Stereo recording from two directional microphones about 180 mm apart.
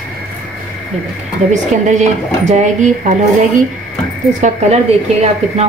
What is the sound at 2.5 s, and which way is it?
Speech, 40° right (ahead or behind).